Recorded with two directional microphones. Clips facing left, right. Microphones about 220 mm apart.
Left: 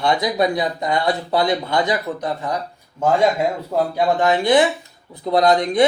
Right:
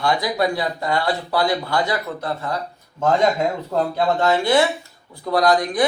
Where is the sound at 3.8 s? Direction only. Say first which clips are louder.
Left 2 dB; 15° left (ahead or behind).